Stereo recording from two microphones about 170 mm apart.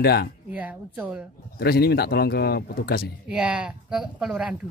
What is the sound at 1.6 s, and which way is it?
Speech, 70° left (ahead or behind).